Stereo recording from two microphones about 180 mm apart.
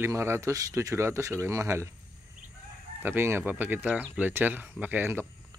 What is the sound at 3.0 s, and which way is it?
Speech, 10° right (ahead or behind).